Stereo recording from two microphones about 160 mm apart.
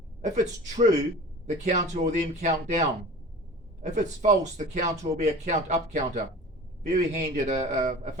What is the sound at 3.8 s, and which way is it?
A man's voice, 50° right (ahead or behind).